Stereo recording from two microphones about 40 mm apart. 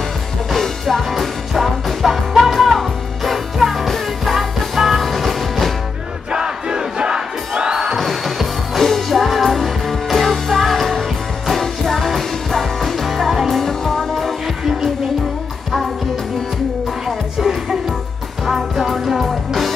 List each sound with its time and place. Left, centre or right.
0.5 s music: centre
6.3 s crowd: centre
8.0 s music: centre
17.4 s music: centre